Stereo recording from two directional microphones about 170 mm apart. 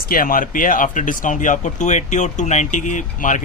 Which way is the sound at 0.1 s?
55° left (ahead or behind).